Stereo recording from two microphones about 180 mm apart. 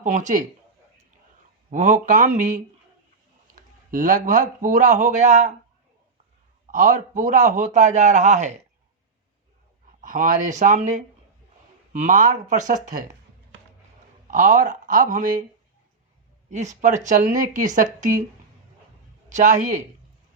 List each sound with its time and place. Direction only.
0.0 s a man's voice: 45° right (ahead or behind)
1.7 s a man's voice: 45° right (ahead or behind)
6.7 s a man's voice: 45° right (ahead or behind)
10.0 s a man's voice: 45° right (ahead or behind)
14.3 s a man's voice: 45° right (ahead or behind)
16.5 s a man's voice: 40° right (ahead or behind)
19.3 s a man's voice: 45° right (ahead or behind)